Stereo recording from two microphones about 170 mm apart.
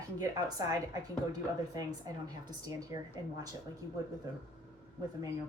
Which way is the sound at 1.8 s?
20° right (ahead or behind).